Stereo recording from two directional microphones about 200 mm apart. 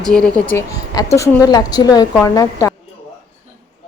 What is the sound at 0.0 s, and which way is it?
A woman's voice, 5° left (ahead or behind).